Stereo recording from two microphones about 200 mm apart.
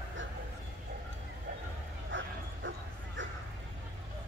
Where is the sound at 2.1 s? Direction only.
65° right (ahead or behind).